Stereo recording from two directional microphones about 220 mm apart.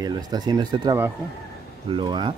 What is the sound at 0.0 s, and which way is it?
Speech, 20° right (ahead or behind).